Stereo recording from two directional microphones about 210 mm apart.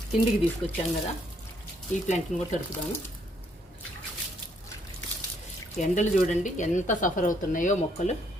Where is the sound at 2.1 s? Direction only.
35° left (ahead or behind).